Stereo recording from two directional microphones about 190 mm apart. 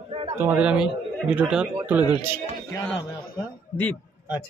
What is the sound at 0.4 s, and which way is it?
Speech, 10° right (ahead or behind).